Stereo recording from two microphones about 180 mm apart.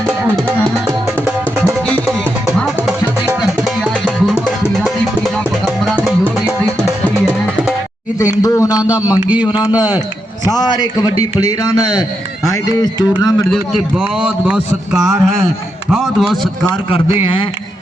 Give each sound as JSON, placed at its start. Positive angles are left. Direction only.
{"t": 2.6, "sound": "music", "side_deg": 0}
{"t": 8.2, "sound": "a man's voice", "side_deg": 20}
{"t": 9.2, "sound": "a man's voice", "side_deg": -10}
{"t": 10.4, "sound": "a man's voice", "side_deg": 20}
{"t": 12.5, "sound": "a man's voice", "side_deg": 20}
{"t": 13.5, "sound": "a man's voice", "side_deg": 0}